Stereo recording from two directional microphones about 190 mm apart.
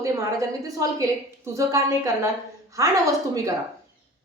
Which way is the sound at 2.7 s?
15° right (ahead or behind).